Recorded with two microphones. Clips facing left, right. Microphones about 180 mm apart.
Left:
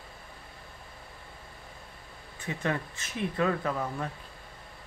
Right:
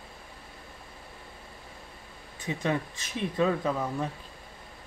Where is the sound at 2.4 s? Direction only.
15° right (ahead or behind).